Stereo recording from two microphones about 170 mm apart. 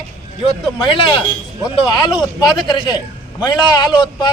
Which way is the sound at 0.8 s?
30° left (ahead or behind).